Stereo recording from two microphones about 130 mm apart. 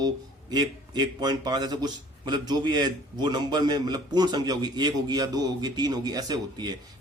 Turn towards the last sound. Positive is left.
turn(degrees=-30)  # may be behind; listen again after turning